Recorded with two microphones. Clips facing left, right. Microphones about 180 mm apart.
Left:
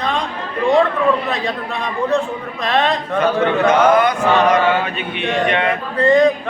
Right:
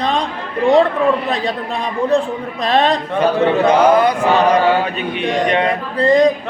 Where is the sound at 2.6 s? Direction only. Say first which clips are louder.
Right 3 dB; 35° right (ahead or behind).